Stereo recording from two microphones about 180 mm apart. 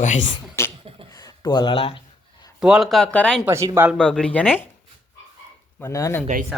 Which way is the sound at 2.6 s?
5° right (ahead or behind).